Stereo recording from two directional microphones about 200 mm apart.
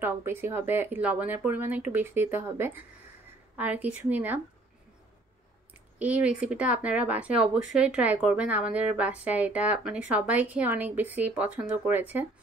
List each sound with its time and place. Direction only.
0.0 s speech: 10° right (ahead or behind)
5.9 s speech: 5° right (ahead or behind)